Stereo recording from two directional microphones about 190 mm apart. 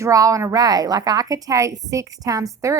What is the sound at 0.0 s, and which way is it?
A woman's voice, 15° right (ahead or behind).